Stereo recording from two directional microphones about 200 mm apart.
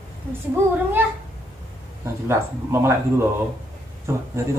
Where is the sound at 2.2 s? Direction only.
15° right (ahead or behind).